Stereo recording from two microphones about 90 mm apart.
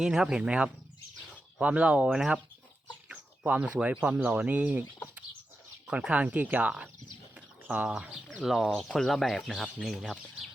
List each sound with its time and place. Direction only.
0.0 s speech: 5° right (ahead or behind)
3.1 s chicken: 15° right (ahead or behind)
3.8 s speech: 20° right (ahead or behind)
5.9 s speech: 15° right (ahead or behind)